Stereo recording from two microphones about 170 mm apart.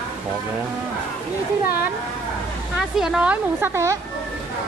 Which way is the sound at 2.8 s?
Centre (ahead or behind).